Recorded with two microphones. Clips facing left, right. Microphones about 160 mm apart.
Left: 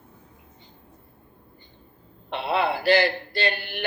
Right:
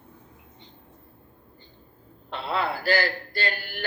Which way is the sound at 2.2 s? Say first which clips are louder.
Left 4 dB; 20° left (ahead or behind).